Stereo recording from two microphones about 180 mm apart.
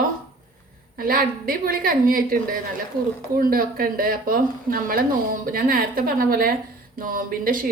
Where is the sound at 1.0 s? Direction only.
55° right (ahead or behind).